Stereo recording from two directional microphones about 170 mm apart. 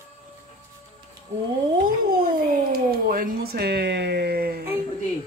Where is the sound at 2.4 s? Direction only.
55° right (ahead or behind).